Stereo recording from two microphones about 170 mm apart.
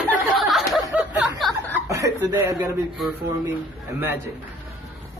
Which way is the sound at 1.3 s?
Centre (ahead or behind).